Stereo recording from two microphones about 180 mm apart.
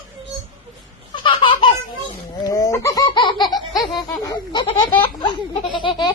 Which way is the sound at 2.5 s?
20° left (ahead or behind).